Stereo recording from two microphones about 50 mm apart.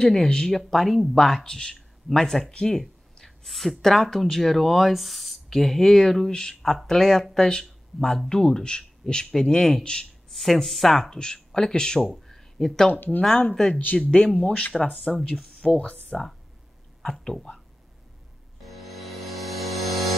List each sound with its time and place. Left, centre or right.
0.0 s speech: centre
12.9 s speech: left
13.6 s speech: centre
14.3 s speech: left
15.3 s speech: centre
17.0 s speech: centre
18.6 s music: centre